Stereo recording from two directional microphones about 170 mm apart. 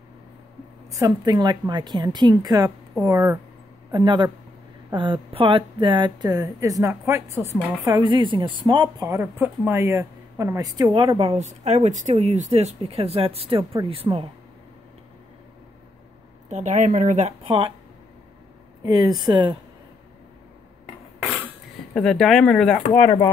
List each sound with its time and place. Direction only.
0.9 s speech: 20° right (ahead or behind)
11.1 s speech: 40° right (ahead or behind)
14.0 s speech: 25° right (ahead or behind)
16.4 s a woman's voice: 45° right (ahead or behind)
18.9 s speech: 25° right (ahead or behind)
21.9 s speech: 5° left (ahead or behind)
23.0 s speech: 20° left (ahead or behind)